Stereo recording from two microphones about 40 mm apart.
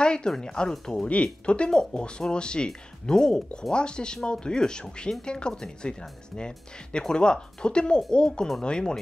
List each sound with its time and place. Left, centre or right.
0.0 s a sound: left
0.4 s speech: centre
1.0 s speech: left